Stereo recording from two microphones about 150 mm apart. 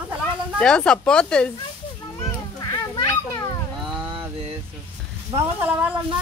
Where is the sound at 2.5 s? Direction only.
20° left (ahead or behind).